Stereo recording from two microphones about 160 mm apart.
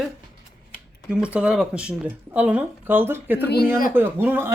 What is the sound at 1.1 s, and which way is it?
Speech, 5° right (ahead or behind).